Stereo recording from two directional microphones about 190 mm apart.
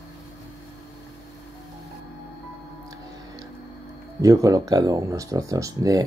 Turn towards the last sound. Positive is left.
turn(degrees=-20)  # may be behind; listen again after turning